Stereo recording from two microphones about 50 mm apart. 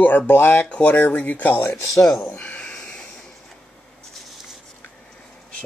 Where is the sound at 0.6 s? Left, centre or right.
Left.